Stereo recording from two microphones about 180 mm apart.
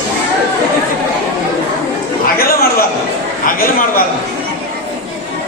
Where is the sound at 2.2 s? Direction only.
55° left (ahead or behind).